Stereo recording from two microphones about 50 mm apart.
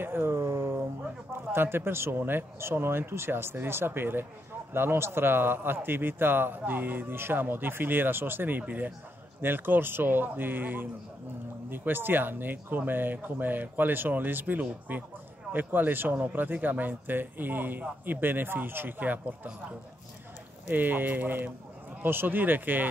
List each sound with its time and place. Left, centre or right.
0.0 s a man's voice: right
0.3 s a sound: right
1.0 s a man's voice: right
20.7 s speech: right